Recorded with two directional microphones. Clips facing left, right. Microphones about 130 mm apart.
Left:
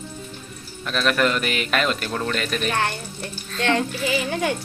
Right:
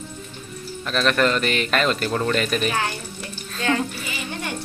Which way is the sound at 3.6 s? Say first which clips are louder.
Left 2 dB; 85° left.